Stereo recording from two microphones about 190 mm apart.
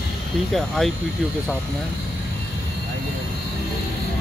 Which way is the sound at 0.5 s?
Centre (ahead or behind).